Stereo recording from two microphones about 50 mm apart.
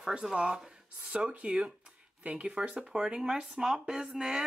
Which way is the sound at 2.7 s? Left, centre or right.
Centre.